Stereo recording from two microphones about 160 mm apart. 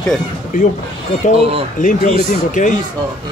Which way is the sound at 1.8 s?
55° left (ahead or behind).